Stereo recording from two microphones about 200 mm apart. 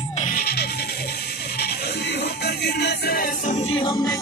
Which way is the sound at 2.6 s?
55° left (ahead or behind).